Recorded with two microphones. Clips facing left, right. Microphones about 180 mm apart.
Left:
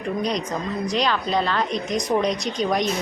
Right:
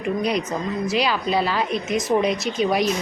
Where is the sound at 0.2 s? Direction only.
10° right (ahead or behind).